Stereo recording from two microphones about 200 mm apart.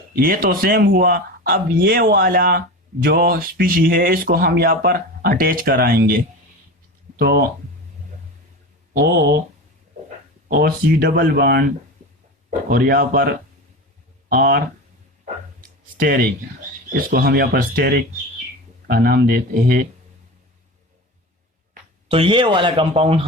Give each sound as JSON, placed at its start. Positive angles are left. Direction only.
{"t": 0.2, "sound": "speech", "side_deg": -45}
{"t": 7.2, "sound": "speech", "side_deg": -55}
{"t": 8.9, "sound": "speech", "side_deg": -45}
{"t": 10.5, "sound": "speech", "side_deg": -45}
{"t": 16.0, "sound": "speech", "side_deg": -45}
{"t": 22.1, "sound": "speech", "side_deg": -25}